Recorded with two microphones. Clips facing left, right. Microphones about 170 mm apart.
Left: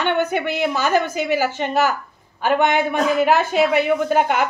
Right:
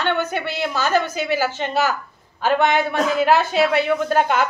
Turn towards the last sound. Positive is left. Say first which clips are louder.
# left 1 dB
turn(degrees=10)  # may be behind; listen again after turning